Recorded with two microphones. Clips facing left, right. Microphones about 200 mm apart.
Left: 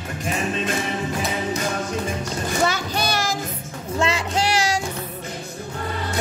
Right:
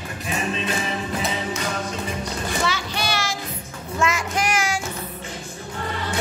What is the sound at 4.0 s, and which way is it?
Music, 30° left (ahead or behind).